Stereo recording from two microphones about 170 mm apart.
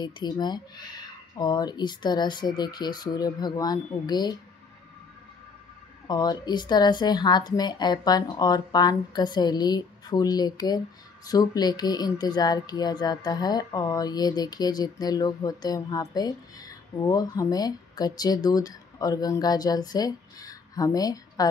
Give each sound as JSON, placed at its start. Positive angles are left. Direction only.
{"t": 0.0, "sound": "speech", "side_deg": 25}
{"t": 6.0, "sound": "speech", "side_deg": 25}